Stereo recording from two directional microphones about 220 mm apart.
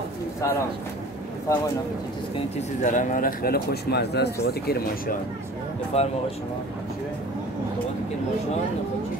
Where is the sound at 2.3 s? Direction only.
30° left (ahead or behind).